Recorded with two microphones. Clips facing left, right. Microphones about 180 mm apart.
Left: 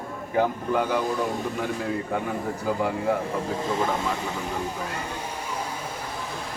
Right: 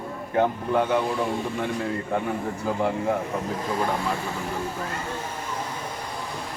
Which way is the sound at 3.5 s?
25° left (ahead or behind).